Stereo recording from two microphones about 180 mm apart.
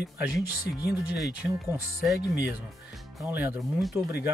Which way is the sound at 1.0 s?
5° right (ahead or behind).